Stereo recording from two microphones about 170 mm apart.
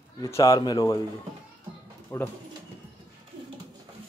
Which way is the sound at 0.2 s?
15° left (ahead or behind).